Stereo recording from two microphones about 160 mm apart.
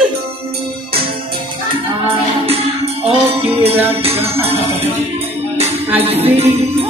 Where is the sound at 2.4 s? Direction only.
40° right (ahead or behind).